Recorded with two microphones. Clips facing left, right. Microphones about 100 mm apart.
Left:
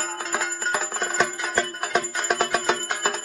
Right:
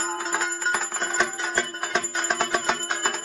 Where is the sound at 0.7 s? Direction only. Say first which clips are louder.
Left 1 dB; 15° left (ahead or behind).